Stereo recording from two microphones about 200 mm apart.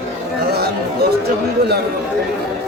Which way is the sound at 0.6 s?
50° right (ahead or behind).